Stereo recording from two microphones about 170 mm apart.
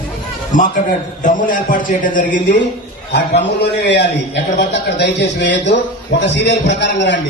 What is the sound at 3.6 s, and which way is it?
A man's voice, 90° left.